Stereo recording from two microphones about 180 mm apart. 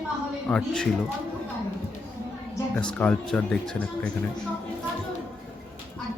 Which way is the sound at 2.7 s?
5° left (ahead or behind).